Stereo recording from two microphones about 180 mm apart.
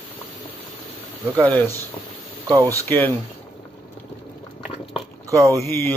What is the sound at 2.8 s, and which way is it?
Speech, 10° left (ahead or behind).